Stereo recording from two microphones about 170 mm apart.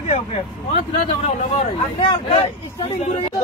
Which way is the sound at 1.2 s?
35° left (ahead or behind).